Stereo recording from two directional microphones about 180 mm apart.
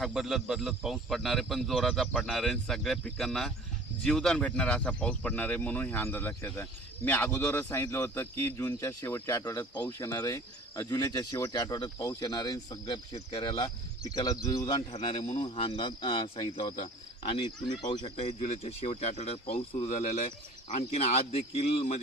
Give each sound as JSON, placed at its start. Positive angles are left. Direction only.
{"t": 0.0, "sound": "speech", "side_deg": 0}
{"t": 14.8, "sound": "speech", "side_deg": 35}